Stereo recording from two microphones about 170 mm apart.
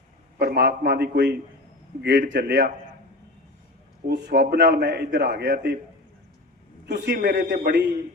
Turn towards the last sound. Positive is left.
turn(degrees=-80)